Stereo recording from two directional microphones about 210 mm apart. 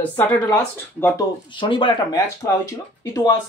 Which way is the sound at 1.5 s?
25° left (ahead or behind).